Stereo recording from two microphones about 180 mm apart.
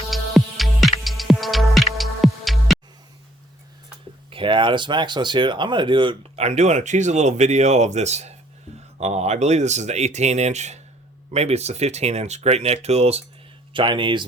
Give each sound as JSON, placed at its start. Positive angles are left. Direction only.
{"t": 0.1, "sound": "music", "side_deg": 0}
{"t": 4.3, "sound": "a man's voice", "side_deg": -30}